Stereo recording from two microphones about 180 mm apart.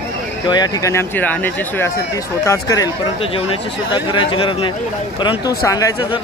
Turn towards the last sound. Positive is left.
turn(degrees=20)  # may be behind; listen again after turning